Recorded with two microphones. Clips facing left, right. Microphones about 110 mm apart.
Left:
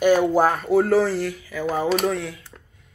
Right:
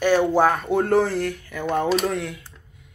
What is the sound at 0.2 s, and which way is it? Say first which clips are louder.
Speech: even; 5° left (ahead or behind).